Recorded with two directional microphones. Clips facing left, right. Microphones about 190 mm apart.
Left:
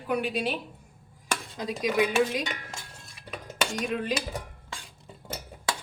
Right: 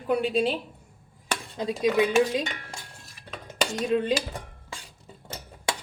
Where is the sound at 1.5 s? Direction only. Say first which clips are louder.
Right 3 dB; 25° right (ahead or behind).